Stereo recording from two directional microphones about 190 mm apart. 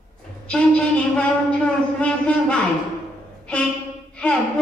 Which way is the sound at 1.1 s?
5° left (ahead or behind).